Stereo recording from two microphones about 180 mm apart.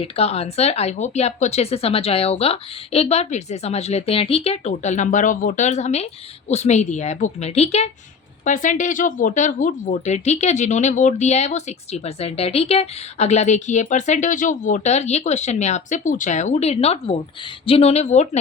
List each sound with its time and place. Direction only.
0.0 s speech: 35° left (ahead or behind)